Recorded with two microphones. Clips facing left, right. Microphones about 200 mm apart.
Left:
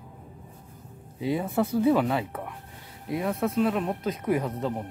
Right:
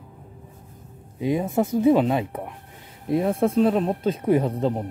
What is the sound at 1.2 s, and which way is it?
Speech, 20° right (ahead or behind).